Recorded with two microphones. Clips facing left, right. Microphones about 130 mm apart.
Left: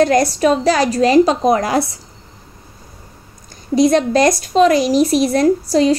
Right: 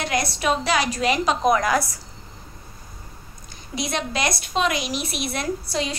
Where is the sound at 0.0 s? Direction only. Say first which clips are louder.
Left 11 dB; 40° left (ahead or behind).